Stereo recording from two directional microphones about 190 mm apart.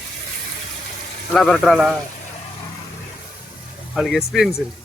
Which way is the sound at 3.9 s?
Centre (ahead or behind).